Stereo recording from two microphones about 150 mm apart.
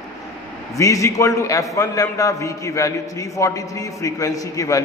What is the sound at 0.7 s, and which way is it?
A man's voice, 20° left (ahead or behind).